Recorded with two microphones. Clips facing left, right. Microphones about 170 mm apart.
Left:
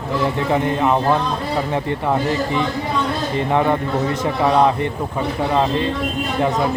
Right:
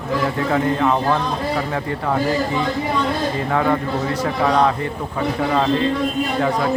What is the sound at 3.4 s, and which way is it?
A man's voice, 20° left (ahead or behind).